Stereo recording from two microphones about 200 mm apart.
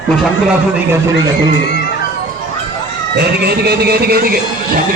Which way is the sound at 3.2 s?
55° right (ahead or behind).